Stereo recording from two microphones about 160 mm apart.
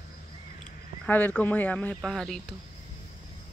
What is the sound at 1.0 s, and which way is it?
Speech, 10° left (ahead or behind).